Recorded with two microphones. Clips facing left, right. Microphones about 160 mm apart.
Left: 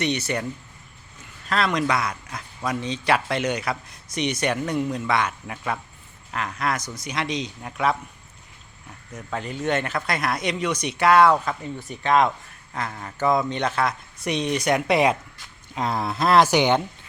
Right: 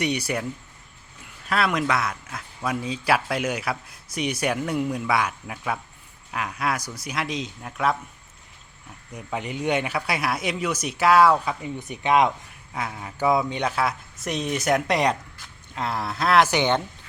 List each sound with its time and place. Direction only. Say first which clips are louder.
0.0 s speech: left 1 dB; 10° right (ahead or behind)
1.5 s speech: left 1 dB; 5° right (ahead or behind)
9.1 s a man's voice: even; 15° right (ahead or behind); by 15.1 s 5° left (ahead or behind)
15.7 s speech: left 3 dB; 15° left (ahead or behind)